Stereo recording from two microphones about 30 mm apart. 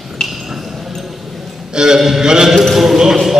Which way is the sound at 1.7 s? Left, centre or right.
Right.